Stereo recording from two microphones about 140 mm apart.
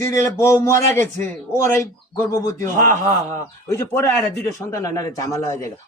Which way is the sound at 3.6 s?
20° left (ahead or behind).